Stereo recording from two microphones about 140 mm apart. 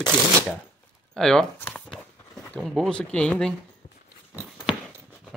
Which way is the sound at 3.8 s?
55° left (ahead or behind).